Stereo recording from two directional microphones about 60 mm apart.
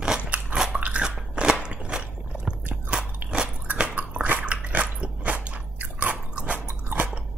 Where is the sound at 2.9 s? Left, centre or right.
Centre.